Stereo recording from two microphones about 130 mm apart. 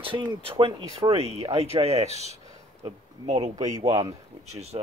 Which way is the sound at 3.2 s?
50° right (ahead or behind).